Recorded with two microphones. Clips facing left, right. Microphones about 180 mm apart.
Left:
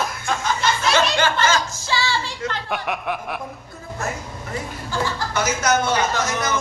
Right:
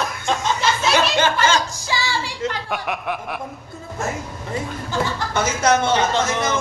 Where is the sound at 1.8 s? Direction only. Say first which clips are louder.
Left 1 dB; 15° right (ahead or behind).